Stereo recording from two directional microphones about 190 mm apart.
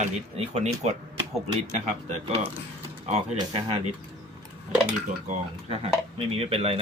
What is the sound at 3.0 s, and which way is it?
Speech, 35° right (ahead or behind).